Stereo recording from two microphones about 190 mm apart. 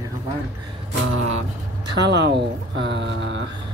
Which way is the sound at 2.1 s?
65° right (ahead or behind).